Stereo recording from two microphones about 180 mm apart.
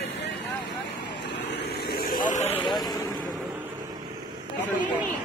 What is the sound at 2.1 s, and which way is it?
Vehicle, 45° left (ahead or behind).